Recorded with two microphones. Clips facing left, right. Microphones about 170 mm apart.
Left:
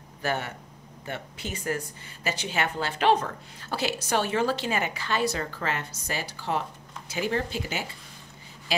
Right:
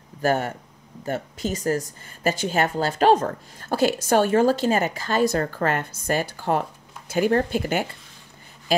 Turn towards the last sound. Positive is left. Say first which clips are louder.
# right 8 dB
turn(degrees=-55)  # may be behind; listen again after turning